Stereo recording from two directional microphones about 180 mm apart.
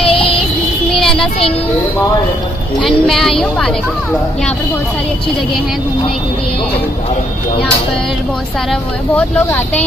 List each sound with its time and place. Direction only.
0.0 s child singing: 30° left (ahead or behind)
0.9 s child singing: 5° left (ahead or behind)
2.8 s a woman's voice: centre (ahead or behind)
9.1 s speech: 10° left (ahead or behind)